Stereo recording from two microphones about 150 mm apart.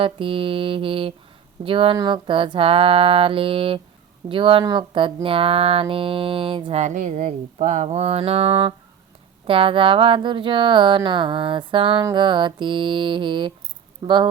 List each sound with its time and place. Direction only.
0.0 s speech: 35° right (ahead or behind)
6.8 s mantra: 55° right (ahead or behind); by 8.7 s 40° right (ahead or behind)
9.5 s speech: 35° right (ahead or behind)